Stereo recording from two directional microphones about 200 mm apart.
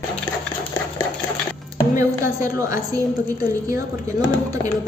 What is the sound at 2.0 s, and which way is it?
A woman's voice, 15° right (ahead or behind).